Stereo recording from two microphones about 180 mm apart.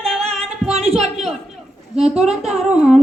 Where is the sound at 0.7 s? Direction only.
35° right (ahead or behind).